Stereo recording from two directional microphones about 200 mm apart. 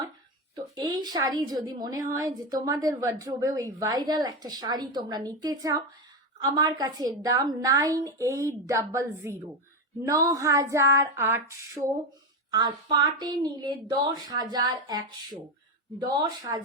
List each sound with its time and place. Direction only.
0.5 s a woman's voice: 20° right (ahead or behind)